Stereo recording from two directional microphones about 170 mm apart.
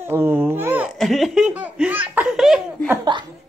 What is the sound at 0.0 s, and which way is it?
Babbling, 10° right (ahead or behind).